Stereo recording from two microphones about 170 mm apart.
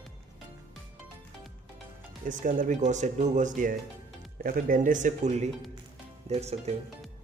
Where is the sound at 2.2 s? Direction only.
50° right (ahead or behind).